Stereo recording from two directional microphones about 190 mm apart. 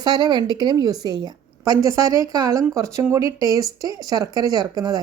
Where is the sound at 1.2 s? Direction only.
20° right (ahead or behind).